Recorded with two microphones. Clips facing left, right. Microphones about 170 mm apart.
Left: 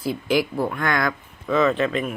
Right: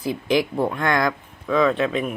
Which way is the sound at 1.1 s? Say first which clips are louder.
Even; 5° left (ahead or behind).